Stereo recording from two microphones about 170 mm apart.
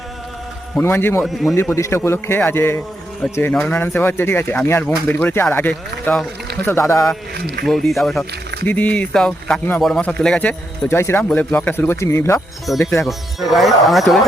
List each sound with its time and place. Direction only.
0.8 s speech: 15° left (ahead or behind)
1.2 s speech: centre (ahead or behind)
1.5 s speech: 15° left (ahead or behind)
7.3 s speech: 70° right (ahead or behind)
7.6 s speech: centre (ahead or behind)
13.1 s speech: centre (ahead or behind)